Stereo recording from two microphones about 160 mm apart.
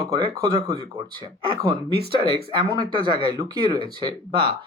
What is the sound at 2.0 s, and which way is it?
Speech, 30° right (ahead or behind).